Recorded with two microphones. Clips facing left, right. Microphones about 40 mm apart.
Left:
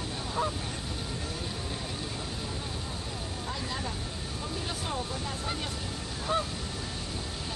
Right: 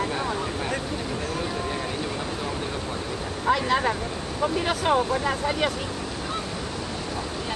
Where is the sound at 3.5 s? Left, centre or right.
Right.